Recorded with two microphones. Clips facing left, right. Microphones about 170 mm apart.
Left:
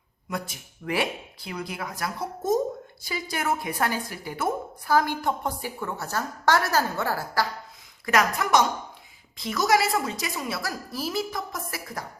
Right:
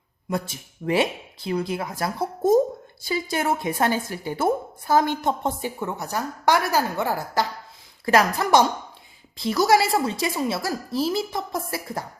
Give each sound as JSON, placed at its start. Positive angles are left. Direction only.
{"t": 0.3, "sound": "a woman's voice", "side_deg": -30}
{"t": 8.0, "sound": "a woman's voice", "side_deg": -30}